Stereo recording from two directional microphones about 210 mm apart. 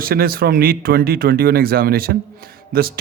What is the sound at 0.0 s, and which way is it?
A man's voice, 45° right (ahead or behind).